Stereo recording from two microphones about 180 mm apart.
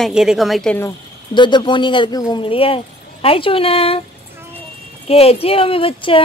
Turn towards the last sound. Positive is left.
turn(degrees=30)  # may be behind; listen again after turning